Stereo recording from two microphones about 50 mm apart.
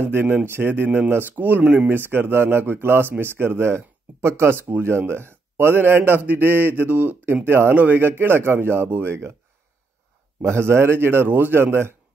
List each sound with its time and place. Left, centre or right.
0.0 s speech: right
1.9 s speech: right
7.4 s speech: right
7.7 s speech: right
10.4 s speech: right